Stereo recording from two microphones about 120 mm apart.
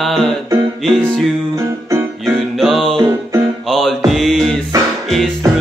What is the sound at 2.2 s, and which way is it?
Music, centre (ahead or behind).